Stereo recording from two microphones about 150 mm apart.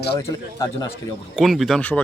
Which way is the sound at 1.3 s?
Centre (ahead or behind).